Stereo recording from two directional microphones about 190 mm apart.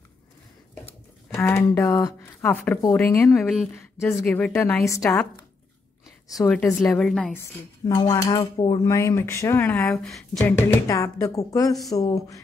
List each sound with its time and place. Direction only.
0.8 s speech: 15° left (ahead or behind)
3.3 s a woman's voice: centre (ahead or behind)
3.7 s speech: 10° left (ahead or behind)
6.4 s a woman's voice: 5° left (ahead or behind)
7.9 s speech: 15° left (ahead or behind)
10.3 s speech: 15° left (ahead or behind)